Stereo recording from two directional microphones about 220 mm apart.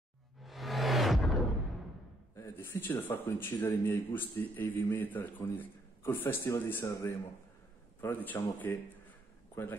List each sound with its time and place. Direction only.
0.4 s music: centre (ahead or behind)
2.3 s a sound: 10° left (ahead or behind)
3.0 s a man's voice: 10° left (ahead or behind)